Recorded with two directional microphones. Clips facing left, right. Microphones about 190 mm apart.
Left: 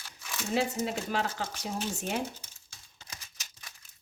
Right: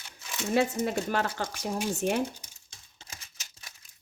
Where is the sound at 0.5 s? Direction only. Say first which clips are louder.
Right 4 dB; 55° right (ahead or behind).